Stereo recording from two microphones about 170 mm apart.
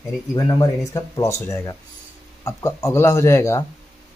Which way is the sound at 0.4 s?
20° left (ahead or behind).